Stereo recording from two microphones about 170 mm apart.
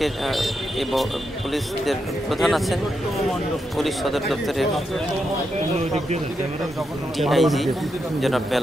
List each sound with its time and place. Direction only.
0.0 s speech: centre (ahead or behind)
5.8 s speech: 40° right (ahead or behind)
7.2 s speech: centre (ahead or behind)